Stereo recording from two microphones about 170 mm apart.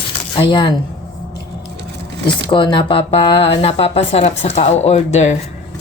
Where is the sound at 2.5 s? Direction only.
30° left (ahead or behind).